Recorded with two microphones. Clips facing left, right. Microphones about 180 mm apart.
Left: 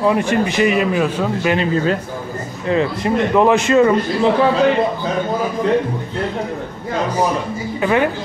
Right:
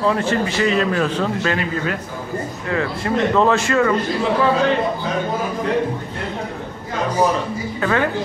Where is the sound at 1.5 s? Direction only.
30° left (ahead or behind).